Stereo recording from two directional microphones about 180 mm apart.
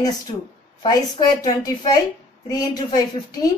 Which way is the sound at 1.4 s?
20° left (ahead or behind).